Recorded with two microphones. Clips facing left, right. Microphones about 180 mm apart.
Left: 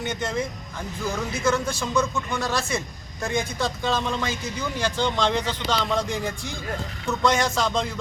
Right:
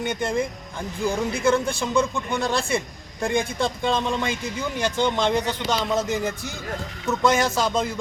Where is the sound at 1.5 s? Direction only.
30° right (ahead or behind).